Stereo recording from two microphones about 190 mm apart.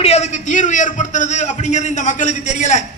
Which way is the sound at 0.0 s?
35° left (ahead or behind).